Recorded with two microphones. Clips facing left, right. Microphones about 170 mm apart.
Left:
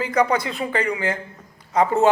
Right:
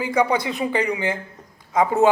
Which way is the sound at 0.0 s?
15° right (ahead or behind).